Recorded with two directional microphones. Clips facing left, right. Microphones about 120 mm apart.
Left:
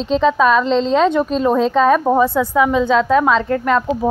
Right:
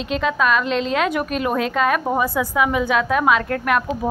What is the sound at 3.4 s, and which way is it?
Speech, 15° left (ahead or behind).